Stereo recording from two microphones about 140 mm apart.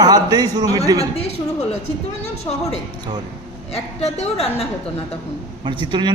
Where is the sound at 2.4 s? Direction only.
50° left (ahead or behind).